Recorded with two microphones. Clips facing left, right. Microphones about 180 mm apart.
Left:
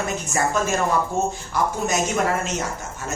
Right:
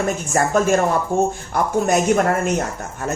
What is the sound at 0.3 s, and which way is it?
Speech, 50° right (ahead or behind).